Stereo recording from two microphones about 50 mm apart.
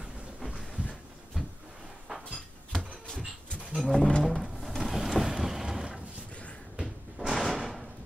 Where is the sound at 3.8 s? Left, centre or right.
Centre.